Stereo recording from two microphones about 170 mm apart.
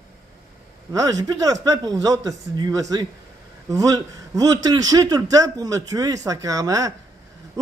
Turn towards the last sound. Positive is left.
turn(degrees=-20)  # may be behind; listen again after turning